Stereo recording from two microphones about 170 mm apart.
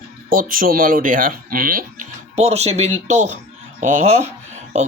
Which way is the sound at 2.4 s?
40° right (ahead or behind).